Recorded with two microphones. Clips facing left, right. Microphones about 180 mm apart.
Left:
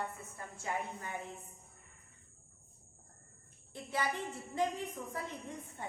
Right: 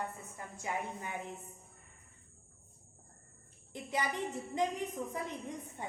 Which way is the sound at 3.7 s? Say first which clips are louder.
Right 1 dB; 20° right (ahead or behind).